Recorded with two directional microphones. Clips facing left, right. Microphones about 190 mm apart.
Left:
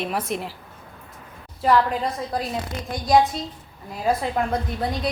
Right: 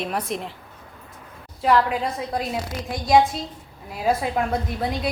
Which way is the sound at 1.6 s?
Centre (ahead or behind).